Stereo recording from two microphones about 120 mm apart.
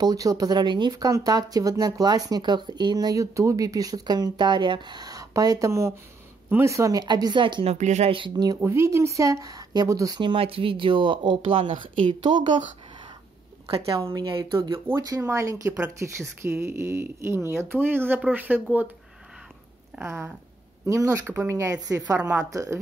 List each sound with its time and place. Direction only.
0.0 s speech: 30° right (ahead or behind)
7.6 s a woman's voice: 75° right (ahead or behind)
8.1 s speech: 40° right (ahead or behind)
8.5 s speech: 25° right (ahead or behind)
10.2 s speech: 50° right (ahead or behind)
13.7 s speech: 50° right (ahead or behind)
14.2 s speech: 40° right (ahead or behind)
14.9 s speech: 25° right (ahead or behind)
20.0 s speech: 20° right (ahead or behind)